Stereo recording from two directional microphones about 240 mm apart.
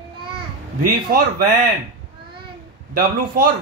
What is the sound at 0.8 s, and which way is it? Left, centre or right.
Speech, right.